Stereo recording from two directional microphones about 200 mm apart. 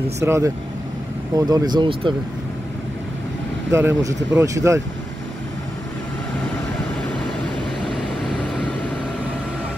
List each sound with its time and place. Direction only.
0.2 s speech: 15° right (ahead or behind)
3.7 s speech: 15° right (ahead or behind)